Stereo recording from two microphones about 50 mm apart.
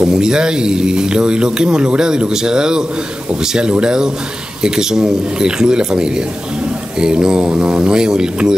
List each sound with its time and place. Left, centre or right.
0.0 s speech: centre
3.8 s speech: centre